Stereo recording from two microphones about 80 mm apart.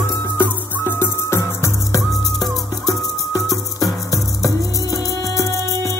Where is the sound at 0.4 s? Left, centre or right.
Left.